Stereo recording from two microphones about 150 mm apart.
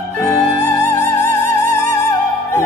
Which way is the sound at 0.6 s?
15° left (ahead or behind).